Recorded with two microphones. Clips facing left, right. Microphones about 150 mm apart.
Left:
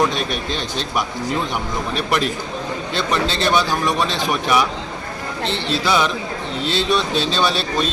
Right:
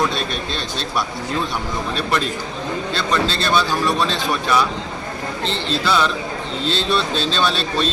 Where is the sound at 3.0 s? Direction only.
15° left (ahead or behind).